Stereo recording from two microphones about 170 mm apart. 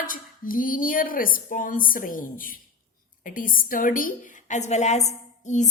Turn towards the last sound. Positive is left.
turn(degrees=45)  # may be behind; listen again after turning